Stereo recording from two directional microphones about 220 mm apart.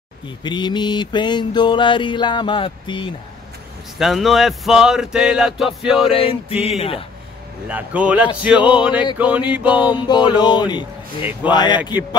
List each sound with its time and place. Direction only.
0.4 s mantra: 20° left (ahead or behind)
4.0 s speech: centre (ahead or behind)
6.1 s mantra: 25° left (ahead or behind)
7.6 s speech: 5° right (ahead or behind)
9.2 s a sound: 5° right (ahead or behind)
10.0 s mantra: 20° left (ahead or behind)